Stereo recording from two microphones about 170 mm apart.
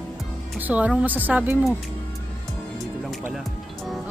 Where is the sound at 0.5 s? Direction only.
10° right (ahead or behind).